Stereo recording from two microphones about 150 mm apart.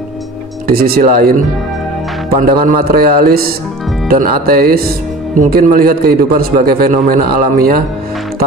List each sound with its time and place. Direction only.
0.7 s a man's voice: 90° right
2.6 s a man's voice: 65° right (ahead or behind)